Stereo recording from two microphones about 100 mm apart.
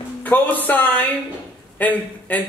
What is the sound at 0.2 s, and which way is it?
A man's voice, 15° left (ahead or behind).